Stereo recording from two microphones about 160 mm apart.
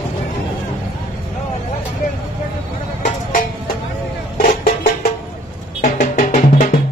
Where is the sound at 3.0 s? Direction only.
60° left (ahead or behind).